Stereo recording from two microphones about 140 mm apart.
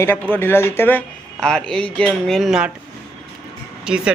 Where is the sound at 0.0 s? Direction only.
15° left (ahead or behind); by 2.7 s 5° right (ahead or behind).